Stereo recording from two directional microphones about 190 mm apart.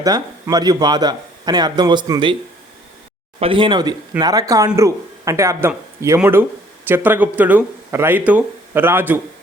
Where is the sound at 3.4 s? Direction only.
25° right (ahead or behind).